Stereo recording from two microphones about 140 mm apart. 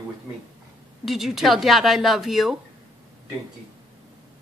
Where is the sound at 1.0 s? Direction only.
Centre (ahead or behind).